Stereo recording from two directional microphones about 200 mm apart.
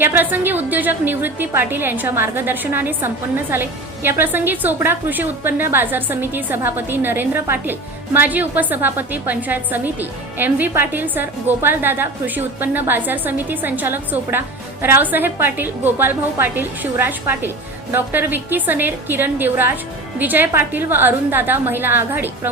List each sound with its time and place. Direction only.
0.0 s a woman's voice: 10° right (ahead or behind)